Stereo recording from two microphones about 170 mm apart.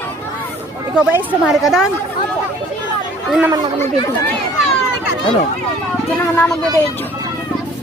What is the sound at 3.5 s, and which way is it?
Speech, 25° right (ahead or behind).